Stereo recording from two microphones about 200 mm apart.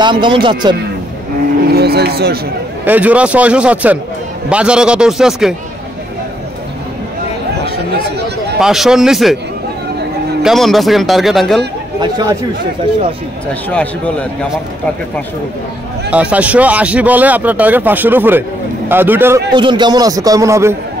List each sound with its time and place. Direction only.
0.0 s speech: 25° right (ahead or behind)
1.7 s speech: 55° right (ahead or behind)
2.8 s speech: 10° right (ahead or behind)
8.5 s speech: centre (ahead or behind)
10.4 s speech: centre (ahead or behind)
13.7 s speech: 5° left (ahead or behind)
16.1 s speech: 5° right (ahead or behind)
19.5 s speech: 20° right (ahead or behind)